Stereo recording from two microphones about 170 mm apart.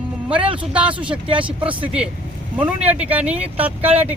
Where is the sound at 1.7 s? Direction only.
30° right (ahead or behind).